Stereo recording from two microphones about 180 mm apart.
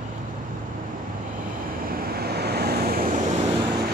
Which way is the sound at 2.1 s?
60° right (ahead or behind).